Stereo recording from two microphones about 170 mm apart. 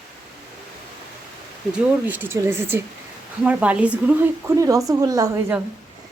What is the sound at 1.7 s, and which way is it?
A woman's voice, 10° right (ahead or behind).